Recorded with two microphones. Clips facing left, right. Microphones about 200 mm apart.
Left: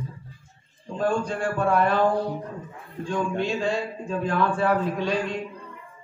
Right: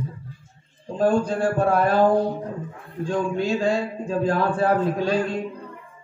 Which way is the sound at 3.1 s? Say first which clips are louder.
Right 3 dB; 40° right (ahead or behind).